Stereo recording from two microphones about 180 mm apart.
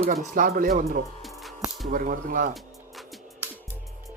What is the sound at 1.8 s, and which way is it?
Speech, 50° right (ahead or behind).